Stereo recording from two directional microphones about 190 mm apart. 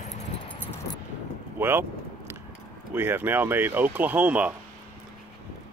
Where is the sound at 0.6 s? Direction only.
15° left (ahead or behind).